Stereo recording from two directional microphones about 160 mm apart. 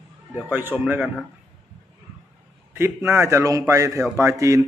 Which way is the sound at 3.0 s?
15° right (ahead or behind).